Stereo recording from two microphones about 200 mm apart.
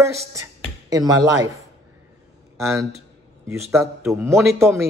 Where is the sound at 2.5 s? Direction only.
15° right (ahead or behind).